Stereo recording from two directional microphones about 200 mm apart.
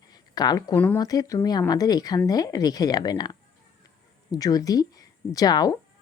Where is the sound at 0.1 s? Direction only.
20° left (ahead or behind).